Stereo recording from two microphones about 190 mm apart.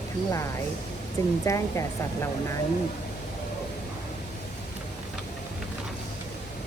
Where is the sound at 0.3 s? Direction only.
15° left (ahead or behind).